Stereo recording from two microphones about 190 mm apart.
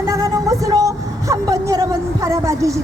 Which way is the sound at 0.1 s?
15° right (ahead or behind).